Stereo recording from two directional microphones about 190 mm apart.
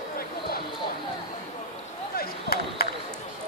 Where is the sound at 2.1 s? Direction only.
55° left (ahead or behind).